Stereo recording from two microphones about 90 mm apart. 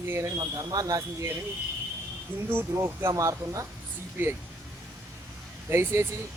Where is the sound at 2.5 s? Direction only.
30° right (ahead or behind).